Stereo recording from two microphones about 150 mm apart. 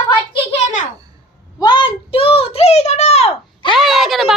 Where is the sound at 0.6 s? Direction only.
55° left (ahead or behind).